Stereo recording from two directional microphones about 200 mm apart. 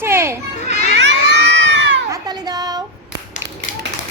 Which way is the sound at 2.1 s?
20° right (ahead or behind).